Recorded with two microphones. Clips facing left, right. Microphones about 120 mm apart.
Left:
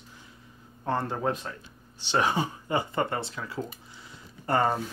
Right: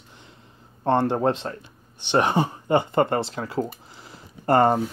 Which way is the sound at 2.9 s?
35° right (ahead or behind).